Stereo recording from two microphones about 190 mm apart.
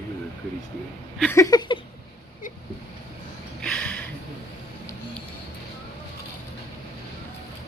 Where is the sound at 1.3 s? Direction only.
20° left (ahead or behind).